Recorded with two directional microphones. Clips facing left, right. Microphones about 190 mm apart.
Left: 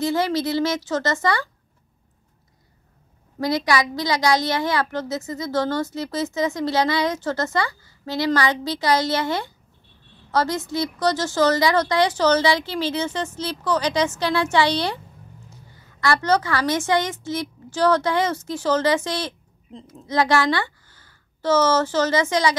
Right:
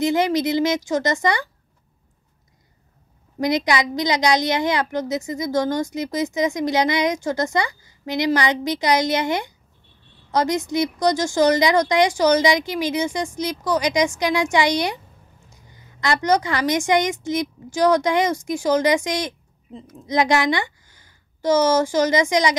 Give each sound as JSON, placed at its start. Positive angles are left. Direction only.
{"t": 0.0, "sound": "a woman's voice", "side_deg": -15}
{"t": 3.3, "sound": "a woman's voice", "side_deg": -20}